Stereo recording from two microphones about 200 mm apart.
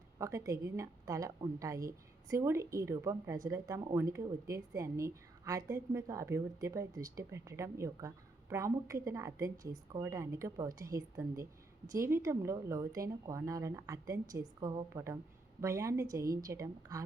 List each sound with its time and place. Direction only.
0.2 s a woman's voice: 15° right (ahead or behind)